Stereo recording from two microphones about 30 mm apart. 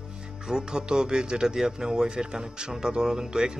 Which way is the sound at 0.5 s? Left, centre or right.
Right.